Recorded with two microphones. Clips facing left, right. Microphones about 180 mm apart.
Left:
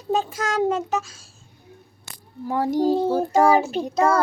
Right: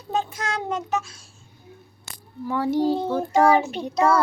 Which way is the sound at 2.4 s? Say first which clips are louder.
Left 1 dB; 40° left (ahead or behind).